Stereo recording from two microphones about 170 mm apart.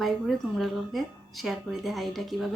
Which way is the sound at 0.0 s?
Centre (ahead or behind).